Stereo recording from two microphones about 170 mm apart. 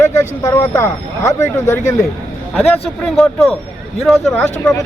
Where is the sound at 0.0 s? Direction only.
15° left (ahead or behind).